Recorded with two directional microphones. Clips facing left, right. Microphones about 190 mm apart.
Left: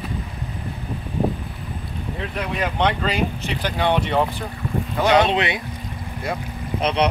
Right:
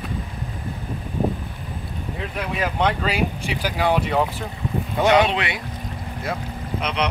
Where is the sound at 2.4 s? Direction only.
5° right (ahead or behind).